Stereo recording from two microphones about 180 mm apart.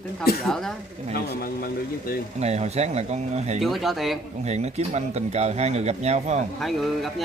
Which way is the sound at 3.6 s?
Centre (ahead or behind).